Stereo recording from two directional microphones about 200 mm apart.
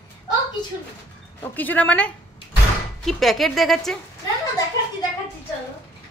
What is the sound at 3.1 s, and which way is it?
Speech, centre (ahead or behind).